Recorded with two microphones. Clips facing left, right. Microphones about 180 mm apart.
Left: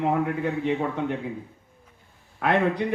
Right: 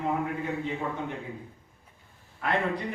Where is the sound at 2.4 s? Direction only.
70° left (ahead or behind).